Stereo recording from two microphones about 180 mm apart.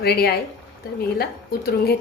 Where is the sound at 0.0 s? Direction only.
60° left (ahead or behind).